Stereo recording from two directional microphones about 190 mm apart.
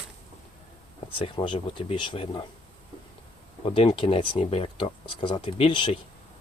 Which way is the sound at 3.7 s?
30° left (ahead or behind).